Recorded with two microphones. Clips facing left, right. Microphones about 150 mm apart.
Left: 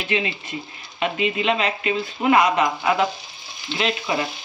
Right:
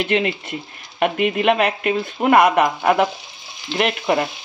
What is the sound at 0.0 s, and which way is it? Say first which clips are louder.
Speech: right 5 dB; 60° right (ahead or behind).